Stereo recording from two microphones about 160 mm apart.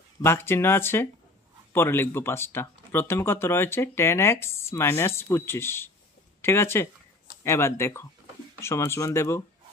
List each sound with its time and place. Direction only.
0.2 s speech: 15° left (ahead or behind)